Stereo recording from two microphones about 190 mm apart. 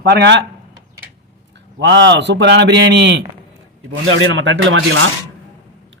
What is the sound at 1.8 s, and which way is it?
A man's voice, 65° right (ahead or behind).